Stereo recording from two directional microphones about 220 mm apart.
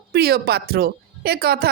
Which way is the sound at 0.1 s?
45° right (ahead or behind).